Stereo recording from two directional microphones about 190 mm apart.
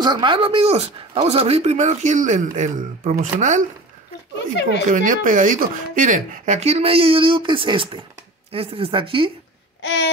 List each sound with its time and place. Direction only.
0.0 s speech: 25° right (ahead or behind); by 3.6 s 40° right (ahead or behind)
4.8 s speech: 45° right (ahead or behind); by 9.3 s 30° right (ahead or behind)
9.8 s babbling: 65° left (ahead or behind)